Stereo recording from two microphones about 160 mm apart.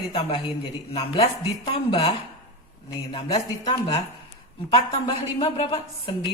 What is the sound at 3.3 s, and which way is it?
A man's voice, 35° left (ahead or behind).